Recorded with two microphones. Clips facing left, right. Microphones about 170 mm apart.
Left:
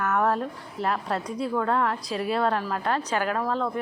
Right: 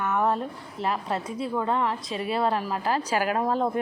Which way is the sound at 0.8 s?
Centre (ahead or behind).